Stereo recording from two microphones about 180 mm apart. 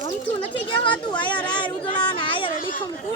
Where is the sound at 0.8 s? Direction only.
25° left (ahead or behind).